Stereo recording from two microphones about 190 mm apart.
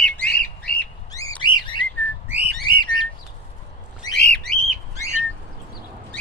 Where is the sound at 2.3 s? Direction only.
10° right (ahead or behind).